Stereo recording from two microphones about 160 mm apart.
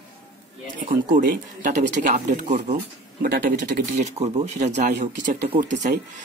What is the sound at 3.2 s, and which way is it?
Speech, 65° right (ahead or behind).